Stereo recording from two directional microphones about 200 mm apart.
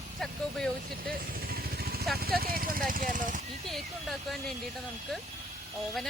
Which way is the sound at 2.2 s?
50° right (ahead or behind).